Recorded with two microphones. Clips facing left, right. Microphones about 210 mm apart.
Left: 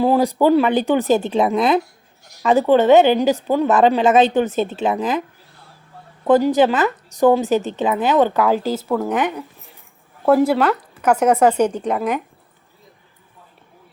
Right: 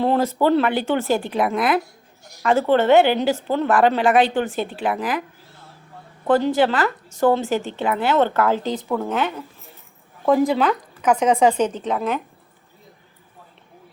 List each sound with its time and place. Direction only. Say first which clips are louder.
0.0 s speech: left 3 dB; 10° left (ahead or behind)
6.2 s speech: left 3 dB; 20° left (ahead or behind)